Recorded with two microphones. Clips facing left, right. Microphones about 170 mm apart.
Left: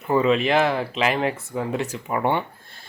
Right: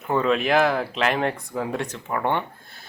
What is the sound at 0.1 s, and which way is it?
Speech, 5° left (ahead or behind).